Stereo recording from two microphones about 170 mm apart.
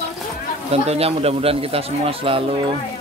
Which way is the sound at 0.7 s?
35° right (ahead or behind).